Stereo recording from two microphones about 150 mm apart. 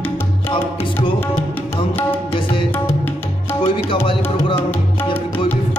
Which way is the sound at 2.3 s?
35° left (ahead or behind).